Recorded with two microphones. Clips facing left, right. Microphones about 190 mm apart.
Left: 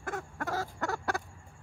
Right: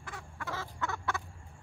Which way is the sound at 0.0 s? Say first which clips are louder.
Left 7 dB; 50° left (ahead or behind).